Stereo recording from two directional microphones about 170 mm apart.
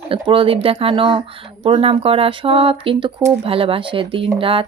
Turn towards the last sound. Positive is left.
turn(degrees=-30)  # may be behind; listen again after turning